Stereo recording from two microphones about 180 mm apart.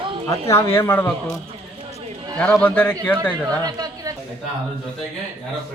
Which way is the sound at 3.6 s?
20° right (ahead or behind).